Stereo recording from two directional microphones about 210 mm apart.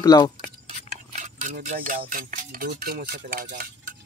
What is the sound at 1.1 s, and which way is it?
Speech, 35° right (ahead or behind).